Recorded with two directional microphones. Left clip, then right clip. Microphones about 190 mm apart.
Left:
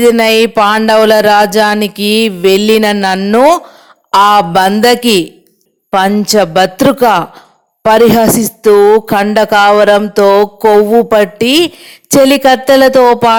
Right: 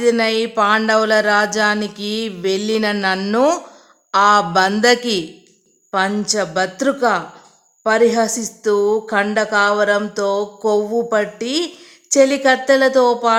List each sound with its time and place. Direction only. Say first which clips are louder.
0.0 s music: left 9 dB; 35° left (ahead or behind)
5.9 s a woman's voice: left 8 dB; 45° left (ahead or behind)
6.2 s music: left 10 dB; 40° left (ahead or behind)